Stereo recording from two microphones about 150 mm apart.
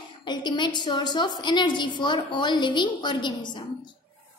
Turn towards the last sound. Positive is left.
turn(degrees=30)  # may be behind; listen again after turning